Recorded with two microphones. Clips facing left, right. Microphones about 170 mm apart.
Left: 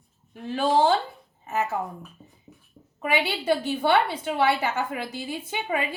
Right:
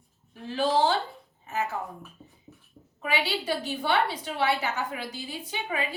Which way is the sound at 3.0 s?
55° left (ahead or behind).